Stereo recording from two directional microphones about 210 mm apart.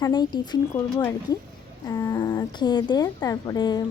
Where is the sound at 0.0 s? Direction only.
20° left (ahead or behind).